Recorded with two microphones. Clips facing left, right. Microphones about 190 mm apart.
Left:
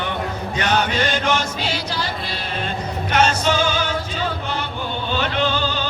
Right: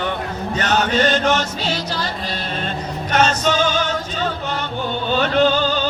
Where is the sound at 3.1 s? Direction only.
10° left (ahead or behind).